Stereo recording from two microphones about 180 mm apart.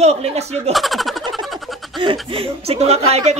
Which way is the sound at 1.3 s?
Centre (ahead or behind).